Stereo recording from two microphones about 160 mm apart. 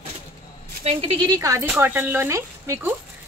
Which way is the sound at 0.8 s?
35° right (ahead or behind).